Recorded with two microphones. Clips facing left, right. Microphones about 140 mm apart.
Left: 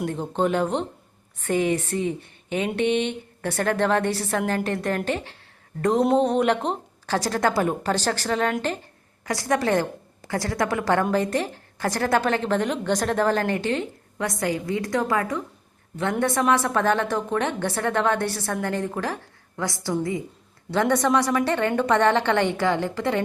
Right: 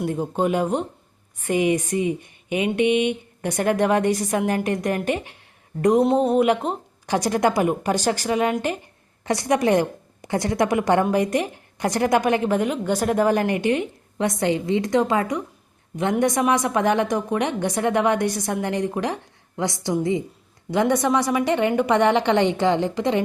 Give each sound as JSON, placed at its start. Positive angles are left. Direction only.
{"t": 0.0, "sound": "a woman's voice", "side_deg": -10}
{"t": 6.0, "sound": "speech", "side_deg": -5}
{"t": 7.1, "sound": "a woman's voice", "side_deg": -15}
{"t": 9.2, "sound": "a woman's voice", "side_deg": -20}